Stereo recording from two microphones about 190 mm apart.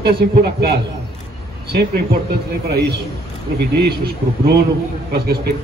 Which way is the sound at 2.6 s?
55° right (ahead or behind).